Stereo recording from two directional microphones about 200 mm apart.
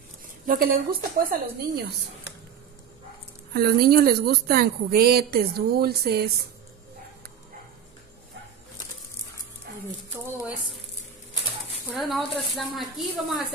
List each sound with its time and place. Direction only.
0.5 s speech: 45° right (ahead or behind)
3.5 s speech: 50° right (ahead or behind)
9.7 s dog: 50° right (ahead or behind)
10.1 s speech: 10° right (ahead or behind)
11.9 s a woman's voice: centre (ahead or behind)